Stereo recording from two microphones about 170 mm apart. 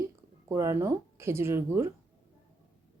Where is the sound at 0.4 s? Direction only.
15° right (ahead or behind).